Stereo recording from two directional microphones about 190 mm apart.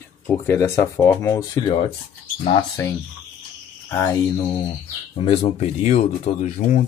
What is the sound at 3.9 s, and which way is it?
Speech, 15° left (ahead or behind).